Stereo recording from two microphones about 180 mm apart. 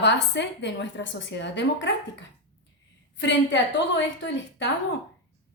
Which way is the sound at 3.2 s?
80° left.